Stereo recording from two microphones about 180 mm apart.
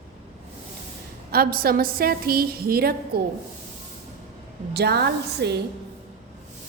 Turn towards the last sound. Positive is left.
turn(degrees=-65)  # may be behind; listen again after turning